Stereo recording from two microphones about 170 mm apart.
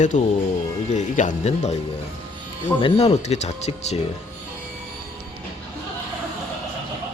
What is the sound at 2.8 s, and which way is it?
Speech, 40° left (ahead or behind).